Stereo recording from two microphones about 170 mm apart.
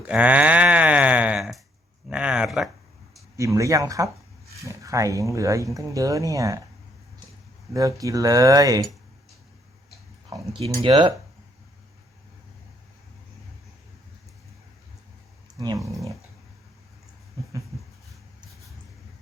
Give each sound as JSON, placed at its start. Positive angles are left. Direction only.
{"t": 0.1, "sound": "sheep", "side_deg": -5}
{"t": 2.0, "sound": "speech", "side_deg": -5}
{"t": 3.3, "sound": "speech", "side_deg": -20}
{"t": 7.7, "sound": "speech", "side_deg": -20}
{"t": 10.5, "sound": "speech", "side_deg": -30}
{"t": 15.5, "sound": "speech", "side_deg": -20}